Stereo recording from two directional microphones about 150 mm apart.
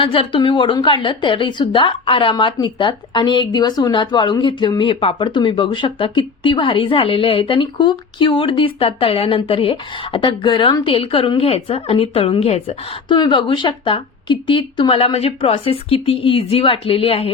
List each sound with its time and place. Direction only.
0.0 s a woman's voice: 35° left (ahead or behind)
13.1 s a woman's voice: 30° left (ahead or behind)